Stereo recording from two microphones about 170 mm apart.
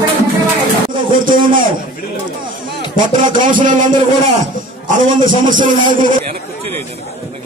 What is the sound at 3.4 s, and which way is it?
A man's voice, 50° right (ahead or behind).